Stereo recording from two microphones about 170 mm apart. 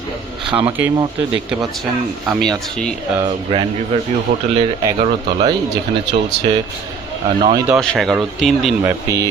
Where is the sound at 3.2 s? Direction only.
30° right (ahead or behind).